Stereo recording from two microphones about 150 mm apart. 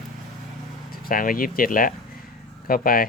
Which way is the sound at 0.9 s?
75° left (ahead or behind).